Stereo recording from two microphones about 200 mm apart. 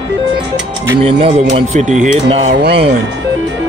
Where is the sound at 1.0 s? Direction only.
30° right (ahead or behind).